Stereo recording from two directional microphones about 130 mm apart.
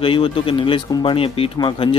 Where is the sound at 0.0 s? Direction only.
45° left (ahead or behind).